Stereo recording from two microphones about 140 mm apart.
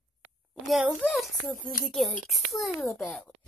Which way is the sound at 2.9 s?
10° left (ahead or behind).